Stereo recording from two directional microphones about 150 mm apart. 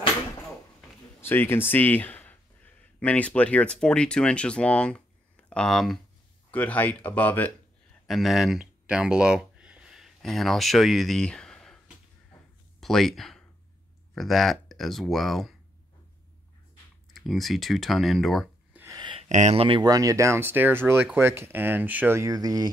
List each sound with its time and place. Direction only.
1.2 s speech: 15° left (ahead or behind)
8.1 s speech: centre (ahead or behind)
12.8 s speech: centre (ahead or behind)
17.1 s speech: centre (ahead or behind)
18.7 s a sound: 15° right (ahead or behind)
18.9 s a sound: 30° right (ahead or behind)
19.2 s speech: 50° right (ahead or behind)
19.9 s speech: 20° right (ahead or behind)